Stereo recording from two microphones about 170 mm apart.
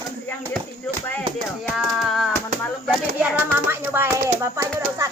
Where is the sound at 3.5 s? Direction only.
15° right (ahead or behind).